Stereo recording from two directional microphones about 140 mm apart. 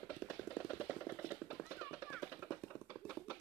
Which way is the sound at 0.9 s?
10° right (ahead or behind).